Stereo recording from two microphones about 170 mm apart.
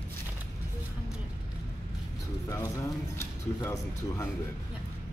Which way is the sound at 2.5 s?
20° left (ahead or behind).